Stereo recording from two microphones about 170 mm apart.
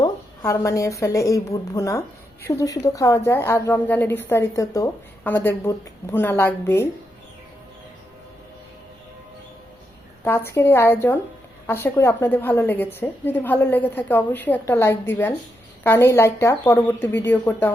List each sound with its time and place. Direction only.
0.0 s a woman's voice: 20° left (ahead or behind)
10.2 s a woman's voice: 15° left (ahead or behind)